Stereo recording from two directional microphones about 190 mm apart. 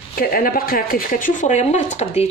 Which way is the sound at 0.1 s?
50° left (ahead or behind).